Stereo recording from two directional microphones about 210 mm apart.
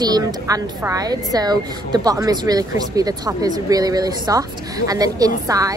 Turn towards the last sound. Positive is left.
turn(degrees=-15)  # may be behind; listen again after turning